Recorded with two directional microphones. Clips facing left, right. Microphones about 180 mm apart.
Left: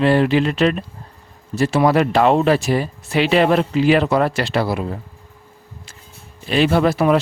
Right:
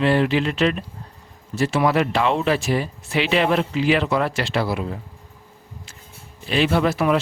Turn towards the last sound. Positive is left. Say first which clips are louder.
# left 4 dB
turn(degrees=40)  # may be behind; listen again after turning